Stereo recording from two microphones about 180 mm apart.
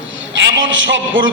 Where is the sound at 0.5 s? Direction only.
90° right.